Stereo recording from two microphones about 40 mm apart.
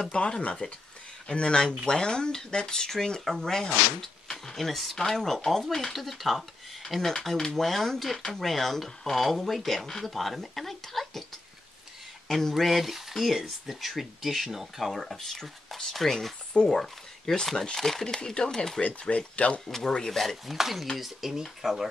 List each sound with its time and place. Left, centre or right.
0.1 s speech: left; by 7.0 s centre
7.2 s speech: centre
12.3 s speech: centre
18.8 s speech: left
20.1 s speech: centre
20.5 s speech: centre